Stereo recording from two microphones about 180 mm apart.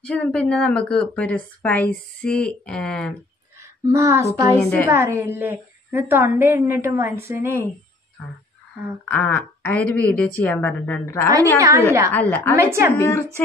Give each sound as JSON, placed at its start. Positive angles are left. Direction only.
{"t": 0.0, "sound": "speech", "side_deg": 5}
{"t": 3.8, "sound": "a woman's voice", "side_deg": -15}
{"t": 4.6, "sound": "a woman's voice", "side_deg": 10}
{"t": 4.9, "sound": "a woman's voice", "side_deg": -15}
{"t": 9.1, "sound": "a woman's voice", "side_deg": 10}
{"t": 12.5, "sound": "a woman's voice", "side_deg": -15}
{"t": 12.9, "sound": "a woman's voice", "side_deg": 15}